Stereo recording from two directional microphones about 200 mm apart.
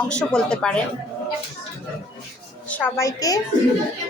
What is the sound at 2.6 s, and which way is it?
Speech, 10° left (ahead or behind).